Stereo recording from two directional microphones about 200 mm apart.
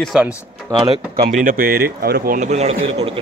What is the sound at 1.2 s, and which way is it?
A man's voice, 40° right (ahead or behind).